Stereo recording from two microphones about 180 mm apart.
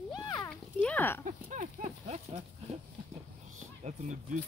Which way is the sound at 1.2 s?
45° right (ahead or behind).